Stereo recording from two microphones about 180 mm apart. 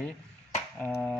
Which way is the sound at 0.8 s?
5° left (ahead or behind).